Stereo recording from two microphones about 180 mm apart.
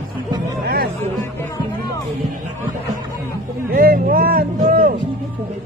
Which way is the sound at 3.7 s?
55° right (ahead or behind).